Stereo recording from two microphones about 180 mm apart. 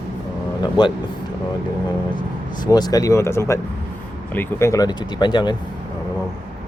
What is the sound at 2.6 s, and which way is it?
Speech, 20° left (ahead or behind).